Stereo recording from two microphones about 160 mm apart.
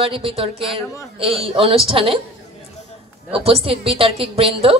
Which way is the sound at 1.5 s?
35° right (ahead or behind).